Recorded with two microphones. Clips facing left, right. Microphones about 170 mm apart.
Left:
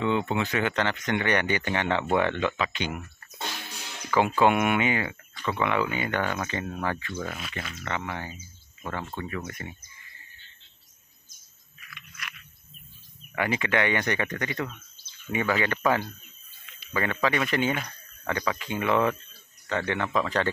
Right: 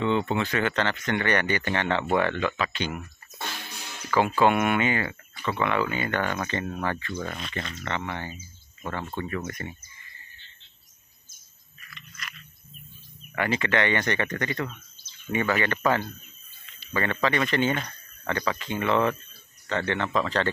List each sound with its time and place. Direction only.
0.0 s speech: 10° left (ahead or behind)
4.1 s speech: 15° left (ahead or behind)
13.3 s a man's voice: 10° left (ahead or behind)